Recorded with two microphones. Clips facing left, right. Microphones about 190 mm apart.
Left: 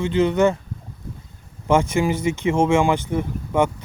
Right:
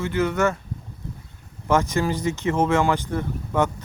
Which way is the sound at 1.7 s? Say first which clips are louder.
Left 3 dB; 15° left (ahead or behind).